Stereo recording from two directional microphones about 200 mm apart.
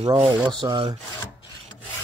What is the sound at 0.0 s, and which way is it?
Speech, 25° right (ahead or behind).